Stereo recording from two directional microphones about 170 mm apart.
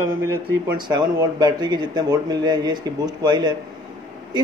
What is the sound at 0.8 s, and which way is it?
Speech, 25° right (ahead or behind).